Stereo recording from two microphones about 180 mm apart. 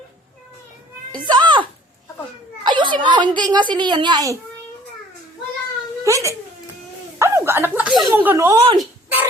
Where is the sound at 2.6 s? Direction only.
25° right (ahead or behind).